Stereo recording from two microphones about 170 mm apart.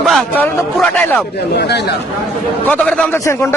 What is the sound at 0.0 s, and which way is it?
Speech, 5° left (ahead or behind).